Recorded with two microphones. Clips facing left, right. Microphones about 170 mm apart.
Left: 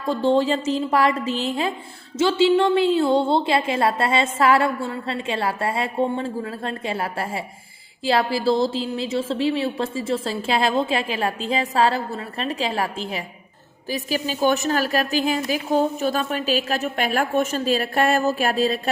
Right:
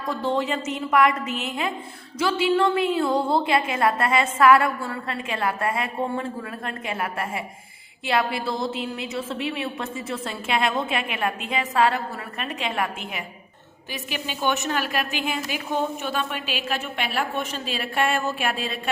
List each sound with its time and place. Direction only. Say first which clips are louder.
0.0 s a woman's voice: left 6 dB; 30° left (ahead or behind)